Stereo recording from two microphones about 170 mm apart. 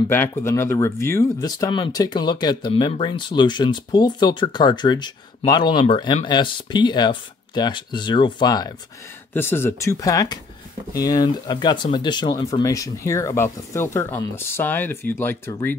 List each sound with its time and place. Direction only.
0.1 s speech: 15° left (ahead or behind)